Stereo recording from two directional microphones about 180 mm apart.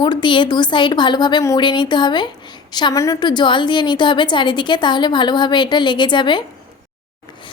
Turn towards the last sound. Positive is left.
turn(degrees=25)  # may be behind; listen again after turning